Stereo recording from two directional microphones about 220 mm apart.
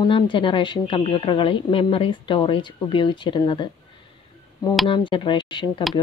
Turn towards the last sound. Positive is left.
turn(degrees=20)  # may be behind; listen again after turning